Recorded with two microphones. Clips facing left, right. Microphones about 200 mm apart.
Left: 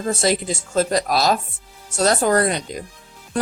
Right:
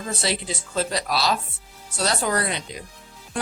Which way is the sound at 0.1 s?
45° left (ahead or behind).